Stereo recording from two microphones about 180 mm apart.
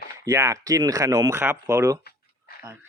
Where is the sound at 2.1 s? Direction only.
65° left (ahead or behind).